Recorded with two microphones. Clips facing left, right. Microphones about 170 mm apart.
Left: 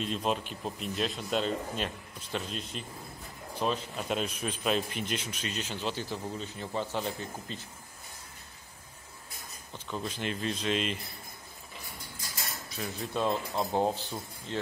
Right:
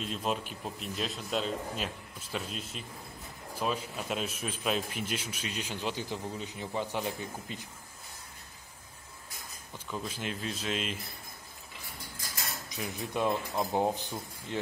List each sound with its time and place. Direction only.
0.0 s a man's voice: centre (ahead or behind)
9.8 s a man's voice: 5° right (ahead or behind)
12.6 s cutlery: 15° right (ahead or behind)
13.6 s a man's voice: 15° right (ahead or behind)